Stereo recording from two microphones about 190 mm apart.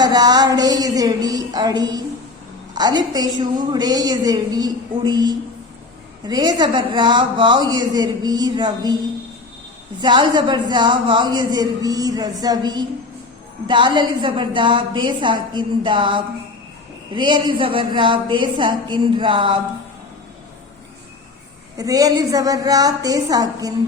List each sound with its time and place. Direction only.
0.0 s a man's voice: 20° right (ahead or behind)
10.0 s a man's voice: 25° right (ahead or behind)
21.8 s a man's voice: 20° right (ahead or behind)